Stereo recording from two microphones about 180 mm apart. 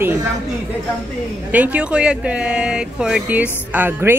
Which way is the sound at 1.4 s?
10° right (ahead or behind).